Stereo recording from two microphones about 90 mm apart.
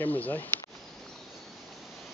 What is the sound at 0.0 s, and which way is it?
Speech, 20° left (ahead or behind).